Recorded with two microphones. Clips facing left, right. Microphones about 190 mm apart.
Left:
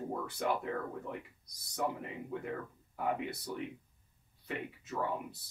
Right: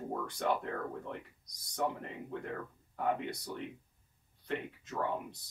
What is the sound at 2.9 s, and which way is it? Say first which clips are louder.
Speech: right 1 dB; 5° left (ahead or behind).